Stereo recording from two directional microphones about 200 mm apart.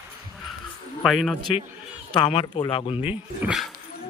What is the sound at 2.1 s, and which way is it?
Speech, 25° left (ahead or behind).